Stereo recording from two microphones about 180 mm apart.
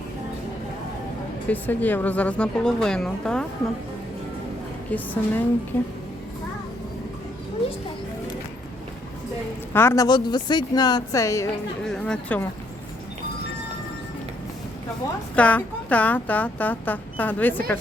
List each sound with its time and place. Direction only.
1.5 s speech: 10° left (ahead or behind)
4.9 s speech: 10° left (ahead or behind)
9.7 s speech: 15° left (ahead or behind)
11.9 s speech: 5° left (ahead or behind)
15.4 s speech: 5° left (ahead or behind)